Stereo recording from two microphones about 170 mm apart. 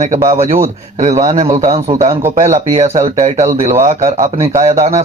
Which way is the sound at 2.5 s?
40° right (ahead or behind).